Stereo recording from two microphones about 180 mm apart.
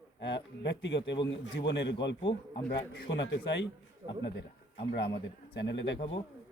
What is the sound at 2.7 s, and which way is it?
A man's voice, 70° left (ahead or behind).